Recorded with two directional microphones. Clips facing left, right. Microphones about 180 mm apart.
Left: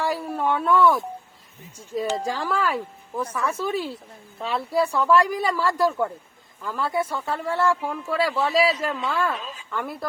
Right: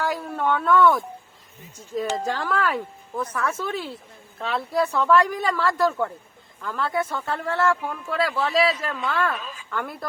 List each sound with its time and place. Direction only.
0.0 s speech: 10° left (ahead or behind)
2.2 s speech: 5° left (ahead or behind)
9.3 s a woman's voice: 25° left (ahead or behind)
9.6 s speech: centre (ahead or behind)